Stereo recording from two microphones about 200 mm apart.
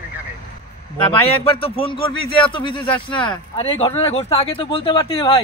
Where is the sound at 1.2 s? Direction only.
30° left (ahead or behind).